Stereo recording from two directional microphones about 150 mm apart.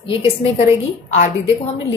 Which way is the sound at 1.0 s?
50° left (ahead or behind).